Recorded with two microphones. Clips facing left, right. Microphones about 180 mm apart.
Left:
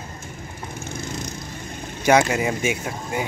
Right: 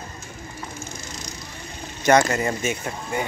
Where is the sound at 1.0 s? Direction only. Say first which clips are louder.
Left 6 dB; 55° left (ahead or behind).